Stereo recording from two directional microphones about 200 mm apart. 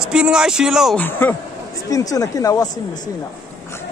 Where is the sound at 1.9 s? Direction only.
15° left (ahead or behind).